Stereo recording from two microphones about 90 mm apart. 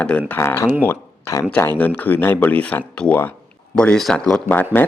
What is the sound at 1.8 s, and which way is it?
Speech, 20° left (ahead or behind).